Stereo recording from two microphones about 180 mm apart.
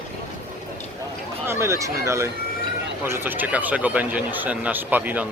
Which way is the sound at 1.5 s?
15° right (ahead or behind).